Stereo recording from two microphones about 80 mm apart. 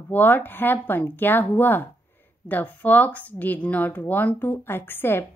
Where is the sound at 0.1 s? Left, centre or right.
Left.